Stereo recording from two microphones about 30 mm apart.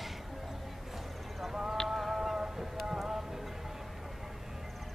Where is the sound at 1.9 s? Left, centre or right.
Centre.